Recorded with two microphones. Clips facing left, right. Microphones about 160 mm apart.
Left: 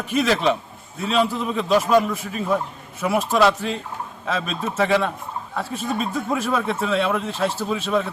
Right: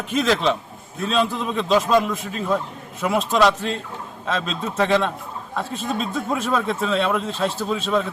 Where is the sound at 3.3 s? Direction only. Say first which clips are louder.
Even; 10° left (ahead or behind).